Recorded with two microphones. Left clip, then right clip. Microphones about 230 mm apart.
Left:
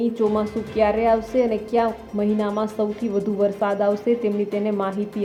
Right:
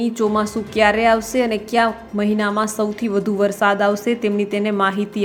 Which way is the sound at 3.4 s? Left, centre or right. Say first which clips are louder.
Right 4 dB; centre.